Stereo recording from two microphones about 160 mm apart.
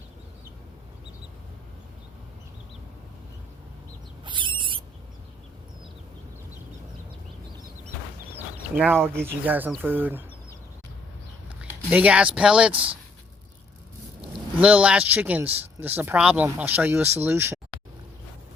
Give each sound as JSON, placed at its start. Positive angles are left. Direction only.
{"t": 4.3, "sound": "rodents", "side_deg": -30}
{"t": 8.4, "sound": "a sound", "side_deg": -10}
{"t": 9.2, "sound": "speech", "side_deg": -10}
{"t": 11.9, "sound": "speech", "side_deg": -10}
{"t": 14.6, "sound": "speech", "side_deg": -10}